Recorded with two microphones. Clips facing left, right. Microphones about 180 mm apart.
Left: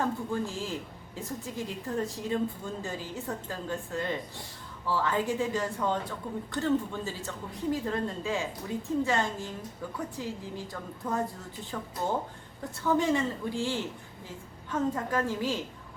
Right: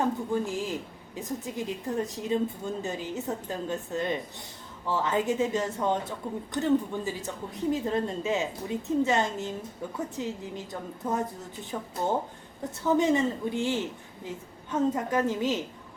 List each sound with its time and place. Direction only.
0.0 s a woman's voice: 15° right (ahead or behind)